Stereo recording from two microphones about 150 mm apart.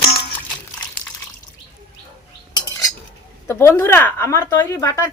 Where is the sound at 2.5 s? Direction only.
25° left (ahead or behind).